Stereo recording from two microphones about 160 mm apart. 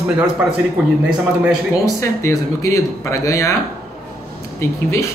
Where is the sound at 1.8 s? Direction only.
20° left (ahead or behind).